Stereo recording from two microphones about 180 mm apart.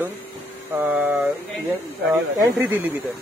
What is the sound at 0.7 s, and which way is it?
Speech, 10° right (ahead or behind).